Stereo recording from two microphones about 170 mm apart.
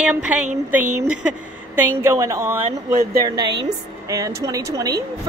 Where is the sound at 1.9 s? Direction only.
15° right (ahead or behind).